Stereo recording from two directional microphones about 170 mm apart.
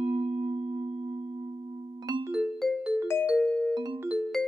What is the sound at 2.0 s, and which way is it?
Piano, 20° right (ahead or behind).